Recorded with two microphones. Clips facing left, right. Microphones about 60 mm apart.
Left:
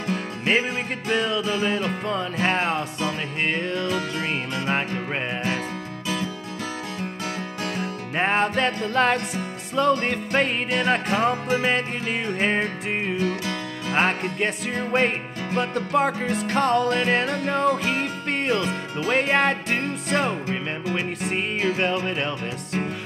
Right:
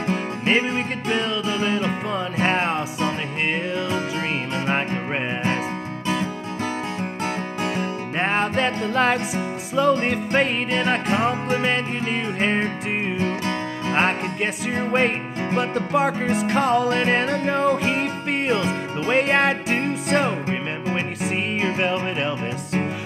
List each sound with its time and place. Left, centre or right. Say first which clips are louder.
1.1 s music: left 1 dB; centre
4.9 s music: right 2 dB; right
7.8 s music: right 1 dB; centre
13.9 s music: even; centre
21.7 s music: right 1 dB; centre